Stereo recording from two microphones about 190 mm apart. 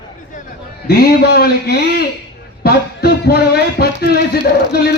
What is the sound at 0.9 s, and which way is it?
Speech, 55° left (ahead or behind).